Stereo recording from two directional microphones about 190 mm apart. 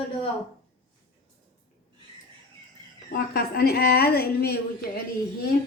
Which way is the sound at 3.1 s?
50° left (ahead or behind).